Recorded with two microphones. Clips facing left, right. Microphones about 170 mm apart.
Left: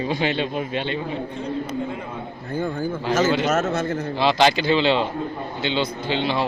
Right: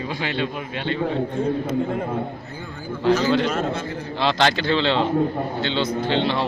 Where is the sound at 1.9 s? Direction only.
50° right (ahead or behind).